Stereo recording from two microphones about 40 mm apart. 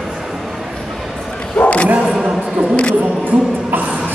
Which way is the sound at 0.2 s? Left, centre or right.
Centre.